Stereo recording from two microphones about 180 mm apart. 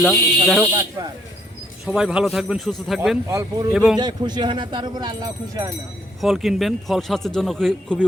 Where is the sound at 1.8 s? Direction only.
Centre (ahead or behind).